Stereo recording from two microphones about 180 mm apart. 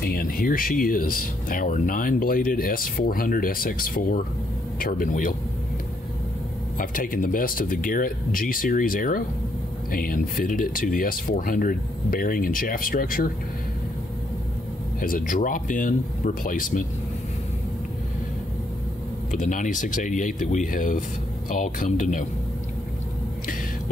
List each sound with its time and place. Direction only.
0.0 s speech: 55° left (ahead or behind)
6.8 s speech: 50° left (ahead or behind)
15.0 s speech: 50° left (ahead or behind)
19.3 s speech: 45° left (ahead or behind)